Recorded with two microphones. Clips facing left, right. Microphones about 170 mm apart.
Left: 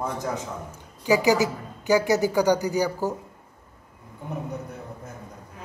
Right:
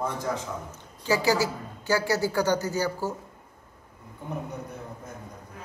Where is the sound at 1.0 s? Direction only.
15° left (ahead or behind).